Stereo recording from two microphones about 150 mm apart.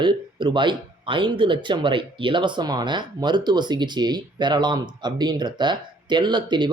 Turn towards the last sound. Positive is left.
turn(degrees=-30)  # may be behind; listen again after turning